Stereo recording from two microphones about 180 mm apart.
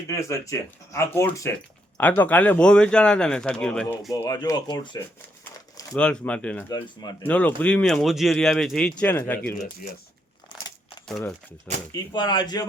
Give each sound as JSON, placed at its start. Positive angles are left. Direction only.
{"t": 0.1, "sound": "speech", "side_deg": 15}
{"t": 4.1, "sound": "speech", "side_deg": 20}
{"t": 6.0, "sound": "speech", "side_deg": 5}
{"t": 6.7, "sound": "speech", "side_deg": 25}
{"t": 7.2, "sound": "speech", "side_deg": 10}
{"t": 11.1, "sound": "speech", "side_deg": 5}
{"t": 11.9, "sound": "speech", "side_deg": 20}